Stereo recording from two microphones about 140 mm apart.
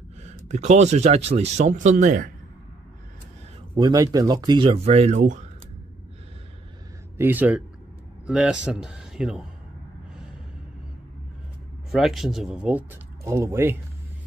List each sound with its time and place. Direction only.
0.2 s speech: 55° right (ahead or behind)
3.7 s speech: 30° right (ahead or behind)
4.8 s speech: 50° right (ahead or behind)
7.2 s speech: 15° right (ahead or behind)
11.9 s speech: centre (ahead or behind)